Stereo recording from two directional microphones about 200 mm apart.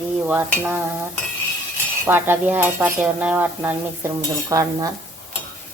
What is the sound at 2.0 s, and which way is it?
Cutlery, 10° right (ahead or behind).